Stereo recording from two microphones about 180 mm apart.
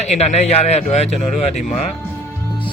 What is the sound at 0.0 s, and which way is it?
A man's voice, 35° left (ahead or behind).